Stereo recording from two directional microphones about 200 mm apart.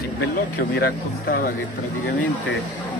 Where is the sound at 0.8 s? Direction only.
50° left (ahead or behind).